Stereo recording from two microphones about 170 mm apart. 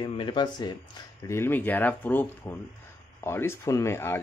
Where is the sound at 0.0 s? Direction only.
30° left (ahead or behind).